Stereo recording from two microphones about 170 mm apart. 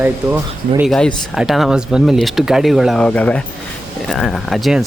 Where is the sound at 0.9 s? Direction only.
5° left (ahead or behind).